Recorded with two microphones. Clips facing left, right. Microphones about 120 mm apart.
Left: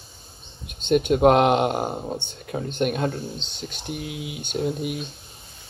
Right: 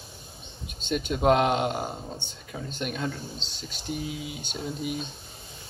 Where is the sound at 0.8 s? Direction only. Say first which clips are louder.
Left 9 dB; 55° left (ahead or behind).